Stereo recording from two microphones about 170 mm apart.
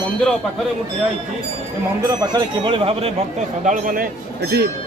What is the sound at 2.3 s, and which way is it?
Speech, 30° right (ahead or behind).